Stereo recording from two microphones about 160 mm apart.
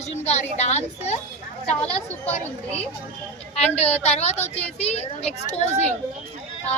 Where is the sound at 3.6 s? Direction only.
40° left (ahead or behind).